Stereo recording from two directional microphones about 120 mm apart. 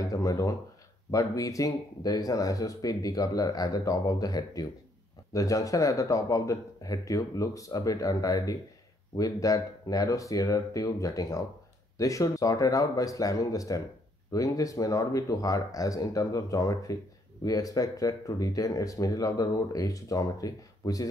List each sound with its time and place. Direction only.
0.0 s speech: 30° left (ahead or behind)